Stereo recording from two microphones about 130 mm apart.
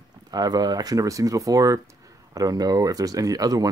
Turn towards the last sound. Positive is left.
turn(degrees=-30)  # may be behind; listen again after turning